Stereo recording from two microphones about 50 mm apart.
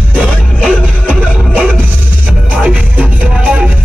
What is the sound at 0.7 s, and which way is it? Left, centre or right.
Music, right.